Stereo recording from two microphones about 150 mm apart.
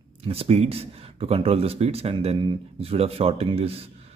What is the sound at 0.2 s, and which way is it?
Speech, 40° right (ahead or behind).